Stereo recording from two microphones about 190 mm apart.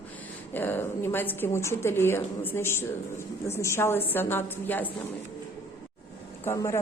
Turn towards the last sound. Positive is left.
turn(degrees=15)  # may be behind; listen again after turning